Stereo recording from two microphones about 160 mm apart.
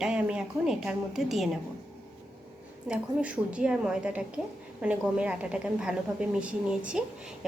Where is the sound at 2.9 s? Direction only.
5° right (ahead or behind).